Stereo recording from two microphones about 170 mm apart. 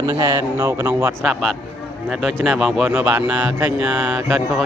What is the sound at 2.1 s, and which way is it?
A man's voice, 5° right (ahead or behind).